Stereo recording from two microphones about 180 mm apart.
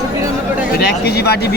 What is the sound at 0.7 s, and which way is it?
Speech, 60° left (ahead or behind).